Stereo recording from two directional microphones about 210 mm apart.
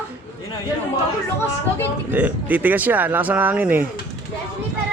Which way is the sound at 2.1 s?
5° right (ahead or behind).